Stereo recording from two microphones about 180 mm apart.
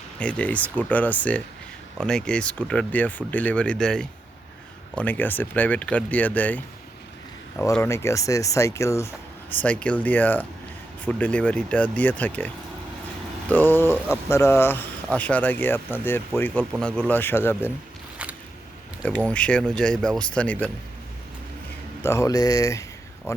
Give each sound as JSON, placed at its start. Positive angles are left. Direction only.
{"t": 0.2, "sound": "speech", "side_deg": 5}
{"t": 7.8, "sound": "speech", "side_deg": 15}
{"t": 13.5, "sound": "speech", "side_deg": 10}
{"t": 19.0, "sound": "speech", "side_deg": 5}
{"t": 22.0, "sound": "speech", "side_deg": 15}